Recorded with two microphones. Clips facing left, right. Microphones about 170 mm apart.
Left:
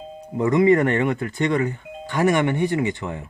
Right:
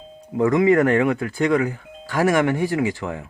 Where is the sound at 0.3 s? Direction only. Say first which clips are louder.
Even; centre (ahead or behind).